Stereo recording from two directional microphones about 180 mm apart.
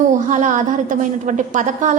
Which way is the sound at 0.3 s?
45° right (ahead or behind).